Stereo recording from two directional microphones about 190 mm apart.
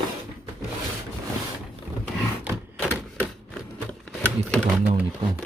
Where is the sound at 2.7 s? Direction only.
5° left (ahead or behind).